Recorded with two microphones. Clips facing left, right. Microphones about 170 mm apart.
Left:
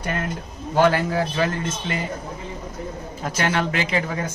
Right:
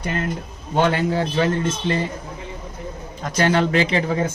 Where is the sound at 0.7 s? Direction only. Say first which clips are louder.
Even; 25° right (ahead or behind).